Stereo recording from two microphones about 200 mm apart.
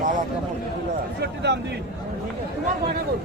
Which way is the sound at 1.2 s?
55° right (ahead or behind).